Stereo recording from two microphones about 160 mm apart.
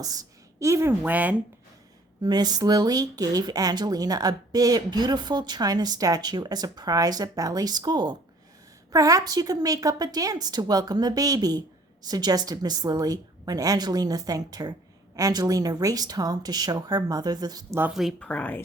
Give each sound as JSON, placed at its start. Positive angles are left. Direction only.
{"t": 0.6, "sound": "speech", "side_deg": -20}
{"t": 2.2, "sound": "speech", "side_deg": -25}
{"t": 17.7, "sound": "speech", "side_deg": -5}